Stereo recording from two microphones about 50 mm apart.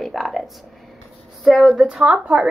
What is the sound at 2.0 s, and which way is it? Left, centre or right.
Speech, right.